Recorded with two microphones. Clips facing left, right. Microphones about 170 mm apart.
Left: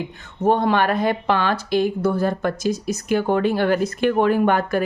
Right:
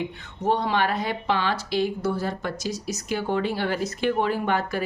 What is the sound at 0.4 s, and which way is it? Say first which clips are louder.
A woman's voice: left 5 dB; 50° left (ahead or behind).